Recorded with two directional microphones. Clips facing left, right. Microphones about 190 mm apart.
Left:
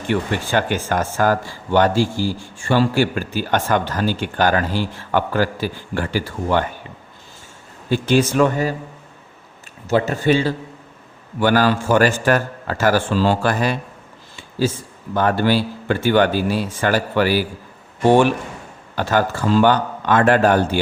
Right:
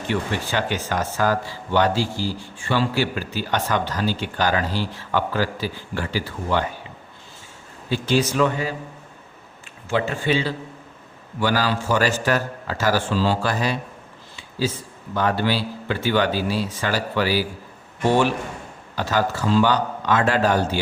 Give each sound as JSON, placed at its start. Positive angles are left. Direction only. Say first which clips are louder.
{"t": 0.1, "sound": "a man's voice", "louder": "left 5 dB", "side_deg": 50}
{"t": 7.9, "sound": "a man's voice", "louder": "left 4 dB", "side_deg": 50}
{"t": 9.9, "sound": "a man's voice", "louder": "left 5 dB", "side_deg": 40}
{"t": 15.1, "sound": "a man's voice", "louder": "left 4 dB", "side_deg": 50}
{"t": 18.9, "sound": "a man's voice", "louder": "left 3 dB", "side_deg": 55}